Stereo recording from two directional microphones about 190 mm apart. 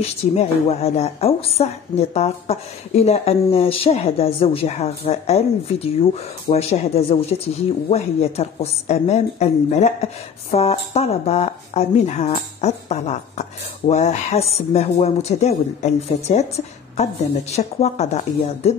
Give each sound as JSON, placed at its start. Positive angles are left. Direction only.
{"t": 0.4, "sound": "a woman's voice", "side_deg": 35}